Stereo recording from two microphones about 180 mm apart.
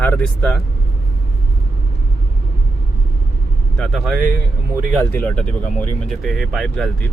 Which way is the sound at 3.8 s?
Centre (ahead or behind).